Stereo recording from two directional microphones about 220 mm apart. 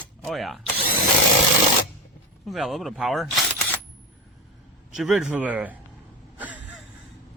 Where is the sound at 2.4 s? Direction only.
Centre (ahead or behind).